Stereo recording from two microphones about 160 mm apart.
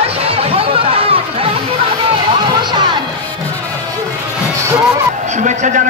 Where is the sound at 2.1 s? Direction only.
30° right (ahead or behind).